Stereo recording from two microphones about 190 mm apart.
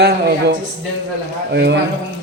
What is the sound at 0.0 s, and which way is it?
Speech, 55° right (ahead or behind).